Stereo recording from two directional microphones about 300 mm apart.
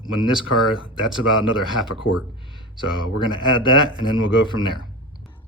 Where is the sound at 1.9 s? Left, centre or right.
Left.